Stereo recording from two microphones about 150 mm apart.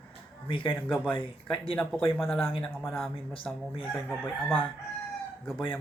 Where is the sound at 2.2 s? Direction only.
35° left (ahead or behind).